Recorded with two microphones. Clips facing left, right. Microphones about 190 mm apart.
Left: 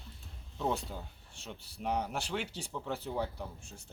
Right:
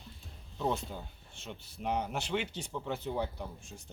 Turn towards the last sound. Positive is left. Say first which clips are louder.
# right 1 dB
turn(degrees=5)  # may be behind; listen again after turning